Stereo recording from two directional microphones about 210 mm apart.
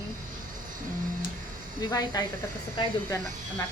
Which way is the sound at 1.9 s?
20° left (ahead or behind).